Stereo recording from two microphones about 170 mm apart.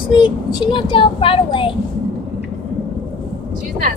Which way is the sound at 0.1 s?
30° left (ahead or behind).